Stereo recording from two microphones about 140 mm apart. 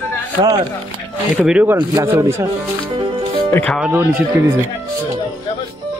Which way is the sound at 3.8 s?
10° right (ahead or behind).